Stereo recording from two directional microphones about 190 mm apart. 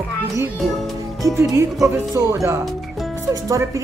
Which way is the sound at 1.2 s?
20° right (ahead or behind).